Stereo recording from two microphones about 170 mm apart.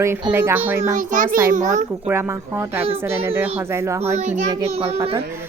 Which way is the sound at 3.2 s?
15° right (ahead or behind).